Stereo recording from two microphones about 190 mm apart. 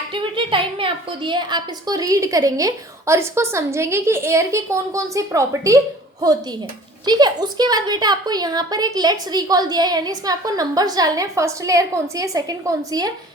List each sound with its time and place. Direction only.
0.1 s a woman's voice: 25° right (ahead or behind)